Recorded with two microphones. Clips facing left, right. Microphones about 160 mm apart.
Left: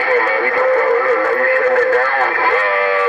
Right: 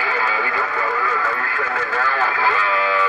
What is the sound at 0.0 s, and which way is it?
Music, 55° left (ahead or behind).